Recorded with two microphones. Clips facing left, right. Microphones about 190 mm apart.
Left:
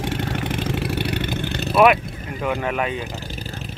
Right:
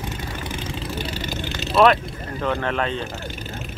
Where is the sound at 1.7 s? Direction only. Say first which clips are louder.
Left 1 dB; 10° left (ahead or behind).